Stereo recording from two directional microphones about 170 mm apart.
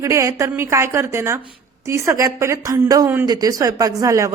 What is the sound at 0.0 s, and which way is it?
Speech, 20° right (ahead or behind).